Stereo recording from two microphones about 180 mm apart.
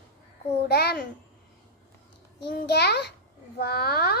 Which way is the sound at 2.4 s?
65° left (ahead or behind).